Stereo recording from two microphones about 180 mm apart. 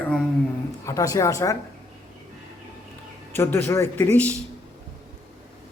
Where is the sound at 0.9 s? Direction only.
15° left (ahead or behind).